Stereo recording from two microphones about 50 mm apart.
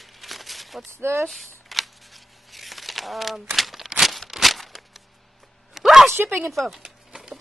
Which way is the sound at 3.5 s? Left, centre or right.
Centre.